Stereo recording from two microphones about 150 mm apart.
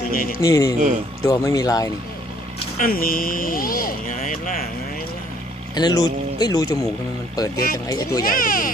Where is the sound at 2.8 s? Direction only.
70° left (ahead or behind).